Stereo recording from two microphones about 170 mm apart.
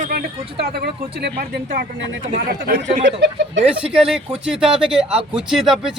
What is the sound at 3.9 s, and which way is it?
A man's voice, 5° right (ahead or behind).